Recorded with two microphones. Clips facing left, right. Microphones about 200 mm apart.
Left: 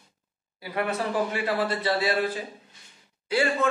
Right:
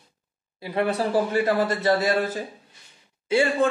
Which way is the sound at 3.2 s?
25° right (ahead or behind).